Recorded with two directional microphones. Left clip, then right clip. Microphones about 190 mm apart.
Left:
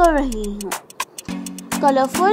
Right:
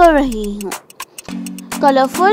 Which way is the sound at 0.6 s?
Centre (ahead or behind).